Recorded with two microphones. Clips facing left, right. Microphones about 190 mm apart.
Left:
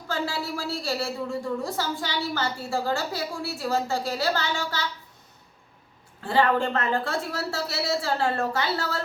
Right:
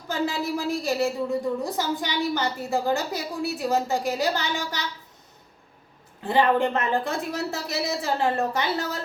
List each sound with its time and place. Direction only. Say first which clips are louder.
0.1 s a woman's voice: right 3 dB; 20° right (ahead or behind)
6.2 s a woman's voice: right 2 dB; 20° right (ahead or behind)